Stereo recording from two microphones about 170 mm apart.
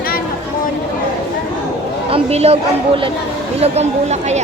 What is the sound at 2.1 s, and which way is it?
Speech, 35° right (ahead or behind).